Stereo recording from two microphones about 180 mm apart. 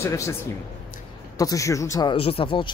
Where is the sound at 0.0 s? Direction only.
15° left (ahead or behind).